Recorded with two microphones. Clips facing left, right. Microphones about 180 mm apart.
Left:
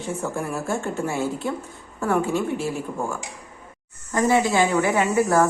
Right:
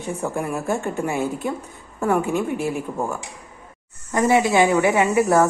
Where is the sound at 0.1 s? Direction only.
15° right (ahead or behind).